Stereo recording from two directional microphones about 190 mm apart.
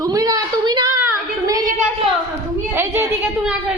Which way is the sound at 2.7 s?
10° right (ahead or behind).